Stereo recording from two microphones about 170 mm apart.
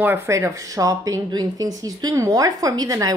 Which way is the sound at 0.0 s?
15° right (ahead or behind).